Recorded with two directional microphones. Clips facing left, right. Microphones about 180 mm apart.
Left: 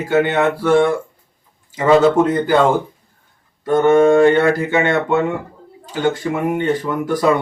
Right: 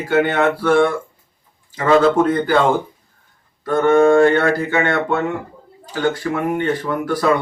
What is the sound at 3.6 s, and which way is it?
Speech, 20° left (ahead or behind).